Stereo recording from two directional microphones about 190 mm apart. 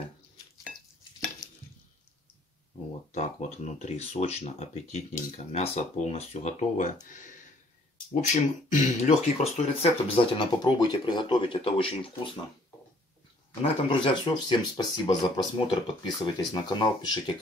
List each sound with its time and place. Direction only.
3.1 s speech: 35° left (ahead or behind)
13.6 s speech: 25° left (ahead or behind)